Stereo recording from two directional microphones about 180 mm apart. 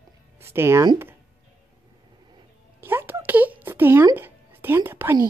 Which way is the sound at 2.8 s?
10° right (ahead or behind).